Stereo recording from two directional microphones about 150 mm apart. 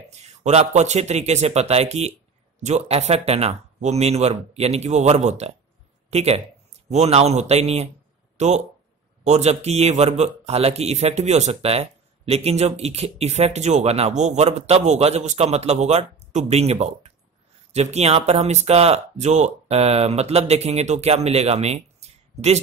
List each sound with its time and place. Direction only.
0.1 s a man's voice: 45° right (ahead or behind)